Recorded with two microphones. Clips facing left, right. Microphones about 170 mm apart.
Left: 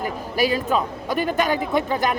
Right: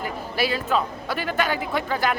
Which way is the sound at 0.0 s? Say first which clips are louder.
Left 3 dB; 40° left (ahead or behind).